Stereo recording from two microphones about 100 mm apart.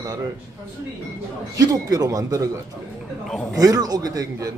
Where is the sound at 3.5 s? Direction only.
35° right (ahead or behind).